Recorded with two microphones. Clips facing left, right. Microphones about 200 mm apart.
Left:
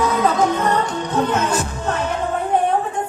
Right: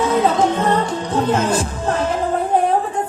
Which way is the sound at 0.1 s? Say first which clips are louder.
Right 2 dB; 30° right (ahead or behind).